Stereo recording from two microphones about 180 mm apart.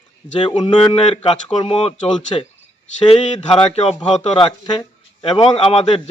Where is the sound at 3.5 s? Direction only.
35° left (ahead or behind).